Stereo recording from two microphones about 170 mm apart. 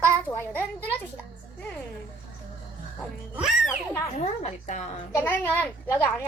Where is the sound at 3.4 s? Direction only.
5° right (ahead or behind).